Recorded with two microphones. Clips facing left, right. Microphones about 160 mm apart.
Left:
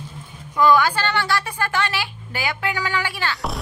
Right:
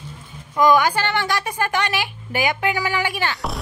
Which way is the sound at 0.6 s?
15° right (ahead or behind).